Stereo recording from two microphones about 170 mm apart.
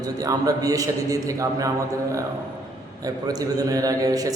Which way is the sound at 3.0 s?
20° right (ahead or behind).